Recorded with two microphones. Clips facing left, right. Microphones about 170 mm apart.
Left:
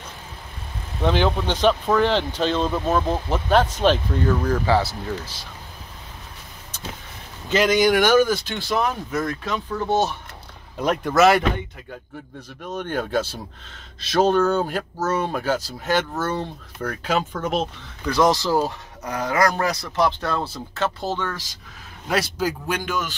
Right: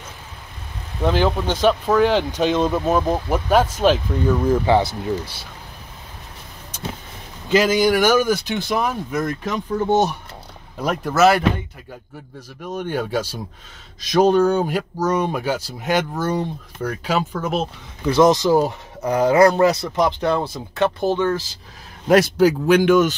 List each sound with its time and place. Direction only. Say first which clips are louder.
1.0 s speech: right 2 dB; 5° right (ahead or behind)
4.5 s speech: right 4 dB; 20° right (ahead or behind)
7.4 s speech: right 2 dB; 5° right (ahead or behind)
10.8 s speech: right 1 dB; 5° right (ahead or behind)
18.0 s speech: right 5 dB; 25° right (ahead or behind)
21.3 s speech: right 10 dB; 30° right (ahead or behind)
22.0 s a man's voice: right 9 dB; 50° right (ahead or behind)
22.4 s speech: right 11 dB; 70° right (ahead or behind); by 23.1 s 55° right (ahead or behind)